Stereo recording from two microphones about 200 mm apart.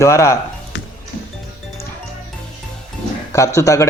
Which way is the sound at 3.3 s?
15° left (ahead or behind).